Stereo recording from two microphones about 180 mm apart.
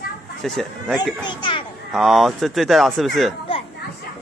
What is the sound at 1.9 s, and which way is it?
Speech, centre (ahead or behind).